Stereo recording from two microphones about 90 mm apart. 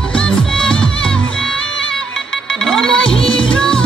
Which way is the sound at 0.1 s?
5° left (ahead or behind).